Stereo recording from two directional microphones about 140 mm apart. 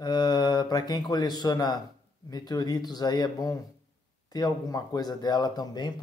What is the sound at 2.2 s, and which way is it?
Speech, 30° left (ahead or behind).